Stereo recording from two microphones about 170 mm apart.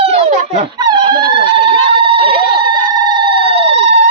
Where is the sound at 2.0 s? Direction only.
30° right (ahead or behind).